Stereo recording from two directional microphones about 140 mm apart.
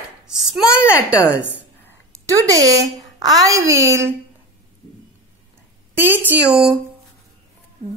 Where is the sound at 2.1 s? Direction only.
20° right (ahead or behind).